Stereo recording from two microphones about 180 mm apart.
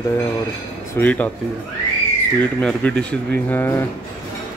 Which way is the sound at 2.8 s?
10° left (ahead or behind).